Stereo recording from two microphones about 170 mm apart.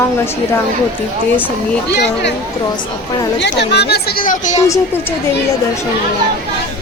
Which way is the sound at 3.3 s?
85° left.